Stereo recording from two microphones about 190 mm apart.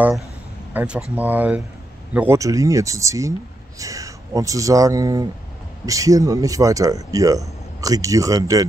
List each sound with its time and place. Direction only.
0.7 s speech: 5° right (ahead or behind)